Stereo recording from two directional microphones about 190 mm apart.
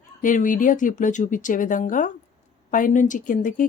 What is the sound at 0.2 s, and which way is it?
Speech, 45° left (ahead or behind).